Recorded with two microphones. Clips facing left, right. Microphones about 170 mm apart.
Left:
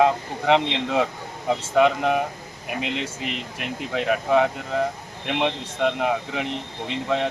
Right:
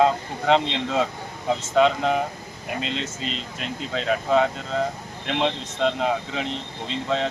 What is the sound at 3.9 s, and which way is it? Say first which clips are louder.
Speech: left 1 dB; 10° left (ahead or behind).